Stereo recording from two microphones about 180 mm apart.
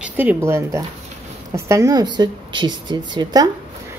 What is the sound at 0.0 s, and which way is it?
Speech, 10° right (ahead or behind).